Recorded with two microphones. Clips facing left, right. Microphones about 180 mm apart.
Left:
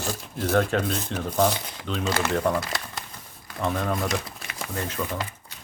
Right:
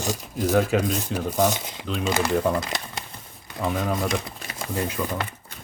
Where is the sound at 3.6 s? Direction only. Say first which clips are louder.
Right 1 dB; 5° right (ahead or behind).